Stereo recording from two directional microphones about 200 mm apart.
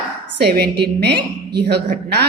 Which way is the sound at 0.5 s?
50° right (ahead or behind).